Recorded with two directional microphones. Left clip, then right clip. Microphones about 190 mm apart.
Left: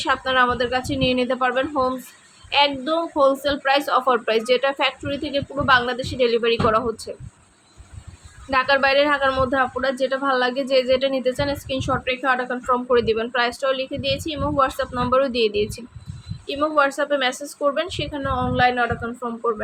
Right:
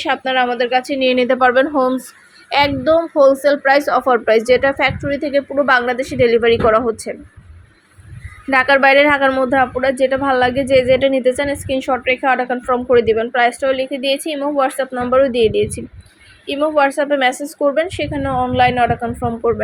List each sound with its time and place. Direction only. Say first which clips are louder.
0.0 s a woman's voice: right 2 dB; 5° right (ahead or behind)
1.4 s a woman's voice: right 8 dB; 30° right (ahead or behind)
8.4 s a woman's voice: right 7 dB; 25° right (ahead or behind)